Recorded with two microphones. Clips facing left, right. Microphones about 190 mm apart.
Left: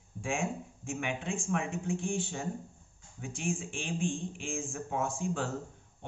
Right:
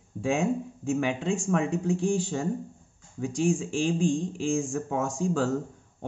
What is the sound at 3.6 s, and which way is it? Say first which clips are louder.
Speech: right 9 dB; 40° right (ahead or behind).